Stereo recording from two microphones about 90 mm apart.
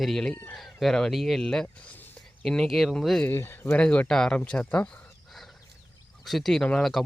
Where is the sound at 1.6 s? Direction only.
15° left (ahead or behind).